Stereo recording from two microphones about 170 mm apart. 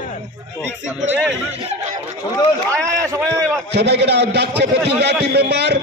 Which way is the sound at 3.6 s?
80° right.